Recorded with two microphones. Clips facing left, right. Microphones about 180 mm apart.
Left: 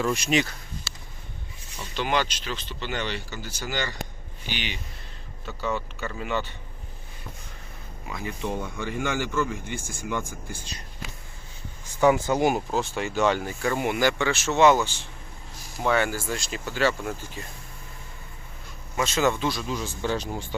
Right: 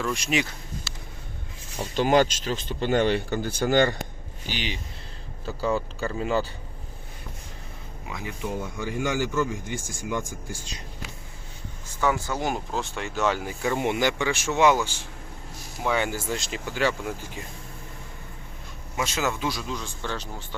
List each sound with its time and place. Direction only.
0.0 s speech: centre (ahead or behind)
1.7 s speech: 40° right (ahead or behind)
4.4 s speech: 35° right (ahead or behind)
8.0 s speech: 15° right (ahead or behind)
11.9 s speech: 20° left (ahead or behind); by 13.5 s centre (ahead or behind)
13.6 s speech: 20° right (ahead or behind)
18.9 s speech: 10° right (ahead or behind)
19.6 s speech: 5° left (ahead or behind)